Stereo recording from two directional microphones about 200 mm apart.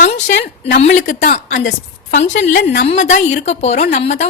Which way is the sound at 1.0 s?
40° left (ahead or behind).